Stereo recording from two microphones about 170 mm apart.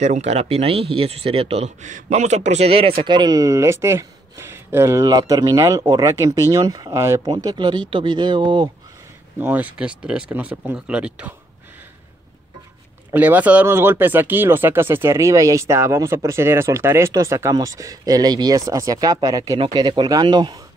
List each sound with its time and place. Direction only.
0.0 s speech: 40° right (ahead or behind); by 7.3 s 15° right (ahead or behind)
7.3 s speech: 25° right (ahead or behind)
9.4 s speech: 10° right (ahead or behind)
13.1 s speech: 10° right (ahead or behind); by 20.6 s 25° right (ahead or behind)